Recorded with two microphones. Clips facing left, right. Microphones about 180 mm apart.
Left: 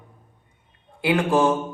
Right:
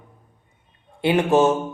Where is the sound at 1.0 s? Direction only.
25° right (ahead or behind).